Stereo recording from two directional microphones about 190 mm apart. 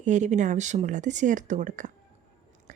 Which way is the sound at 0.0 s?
40° right (ahead or behind).